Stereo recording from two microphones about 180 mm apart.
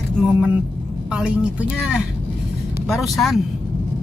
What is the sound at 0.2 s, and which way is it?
Speech, 5° right (ahead or behind).